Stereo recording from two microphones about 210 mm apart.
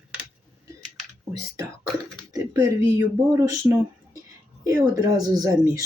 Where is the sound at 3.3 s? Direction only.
15° right (ahead or behind).